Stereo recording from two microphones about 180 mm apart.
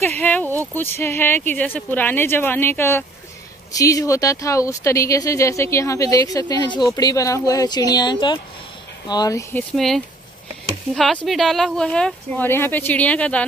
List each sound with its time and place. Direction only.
0.0 s a woman's voice: 10° left (ahead or behind)
9.8 s speech: centre (ahead or behind)
11.2 s a woman's voice: centre (ahead or behind)